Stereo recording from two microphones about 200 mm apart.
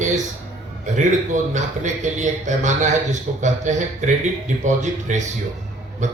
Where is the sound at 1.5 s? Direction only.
35° right (ahead or behind).